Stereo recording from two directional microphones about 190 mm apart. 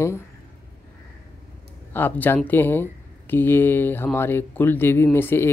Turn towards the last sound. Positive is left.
turn(degrees=10)  # may be behind; listen again after turning